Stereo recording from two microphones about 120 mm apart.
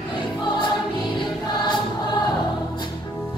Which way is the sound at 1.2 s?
40° left (ahead or behind).